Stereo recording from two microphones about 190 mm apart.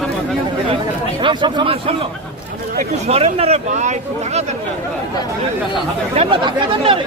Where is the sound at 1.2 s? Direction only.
25° right (ahead or behind).